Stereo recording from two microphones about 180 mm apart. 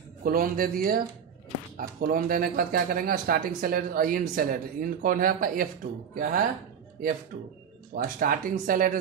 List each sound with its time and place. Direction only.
0.2 s speech: 55° right (ahead or behind)
7.9 s speech: 55° right (ahead or behind)